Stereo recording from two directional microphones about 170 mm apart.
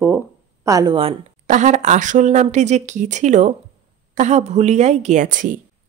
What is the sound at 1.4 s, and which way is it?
A woman's voice, 45° right (ahead or behind).